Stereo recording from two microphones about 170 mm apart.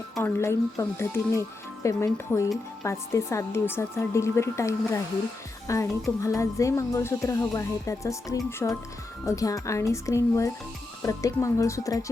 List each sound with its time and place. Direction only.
0.2 s speech: 15° left (ahead or behind)